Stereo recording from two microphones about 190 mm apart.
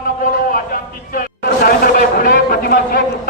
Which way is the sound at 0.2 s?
50° left (ahead or behind).